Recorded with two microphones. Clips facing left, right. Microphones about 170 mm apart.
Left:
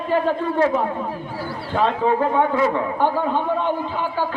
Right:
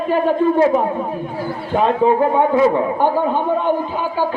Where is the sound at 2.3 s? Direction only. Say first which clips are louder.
Right 5 dB; 15° right (ahead or behind).